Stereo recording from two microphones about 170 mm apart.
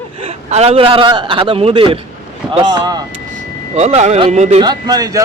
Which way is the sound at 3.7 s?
40° right (ahead or behind).